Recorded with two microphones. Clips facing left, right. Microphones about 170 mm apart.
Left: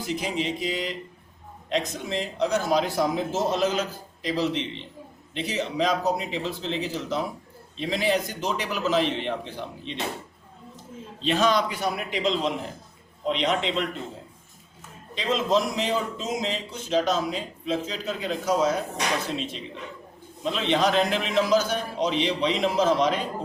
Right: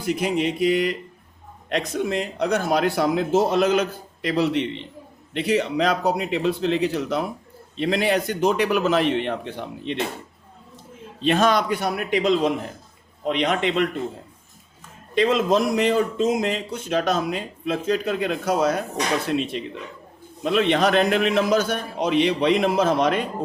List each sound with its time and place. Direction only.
0.0 s a man's voice: 55° right (ahead or behind)
11.2 s a man's voice: 55° right (ahead or behind)
15.1 s a man's voice: 60° right (ahead or behind)